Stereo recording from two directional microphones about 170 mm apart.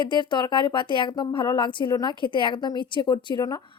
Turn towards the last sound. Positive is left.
turn(degrees=25)  # may be behind; listen again after turning